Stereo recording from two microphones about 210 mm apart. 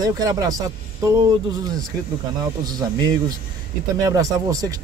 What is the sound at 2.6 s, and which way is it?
A man's voice, 20° right (ahead or behind).